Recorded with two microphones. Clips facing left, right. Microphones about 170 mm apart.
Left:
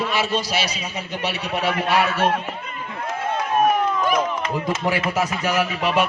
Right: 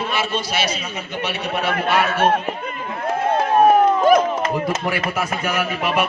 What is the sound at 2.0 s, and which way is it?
Speech, 55° right (ahead or behind).